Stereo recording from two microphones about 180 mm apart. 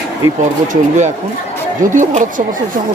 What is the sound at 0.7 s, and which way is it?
Speech, 40° right (ahead or behind).